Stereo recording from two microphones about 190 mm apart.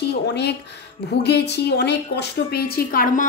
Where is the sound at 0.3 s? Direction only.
60° left (ahead or behind).